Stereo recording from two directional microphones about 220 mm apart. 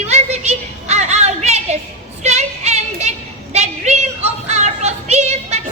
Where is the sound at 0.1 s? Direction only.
30° right (ahead or behind).